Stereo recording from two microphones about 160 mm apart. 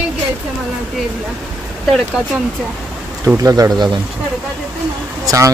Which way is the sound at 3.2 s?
20° right (ahead or behind).